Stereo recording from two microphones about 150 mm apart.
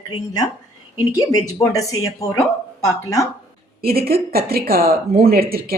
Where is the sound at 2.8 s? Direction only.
20° left (ahead or behind).